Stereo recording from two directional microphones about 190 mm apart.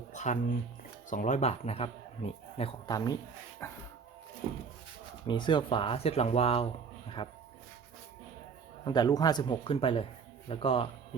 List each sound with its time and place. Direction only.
0.1 s music: 40° left (ahead or behind)
1.1 s speech: 40° left (ahead or behind); by 3.8 s 15° left (ahead or behind)
5.3 s speech: 25° left (ahead or behind)
8.8 s speech: 20° left (ahead or behind)